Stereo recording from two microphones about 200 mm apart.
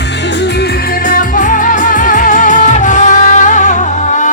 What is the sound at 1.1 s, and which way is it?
Music, 40° left (ahead or behind).